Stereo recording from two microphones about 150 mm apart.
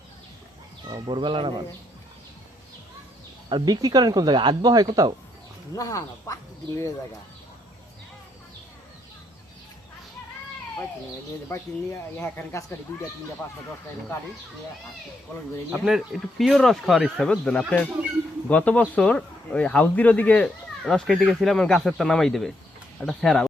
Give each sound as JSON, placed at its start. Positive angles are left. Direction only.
{"t": 0.9, "sound": "speech", "side_deg": -30}
{"t": 3.5, "sound": "speech", "side_deg": -25}
{"t": 5.7, "sound": "speech", "side_deg": 20}
{"t": 11.4, "sound": "speech", "side_deg": 15}
{"t": 15.8, "sound": "speech", "side_deg": 0}